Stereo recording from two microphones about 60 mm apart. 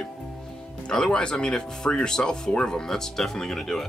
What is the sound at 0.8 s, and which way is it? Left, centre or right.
Speech, centre.